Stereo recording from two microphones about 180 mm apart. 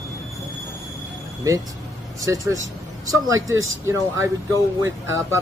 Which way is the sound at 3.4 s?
90° right.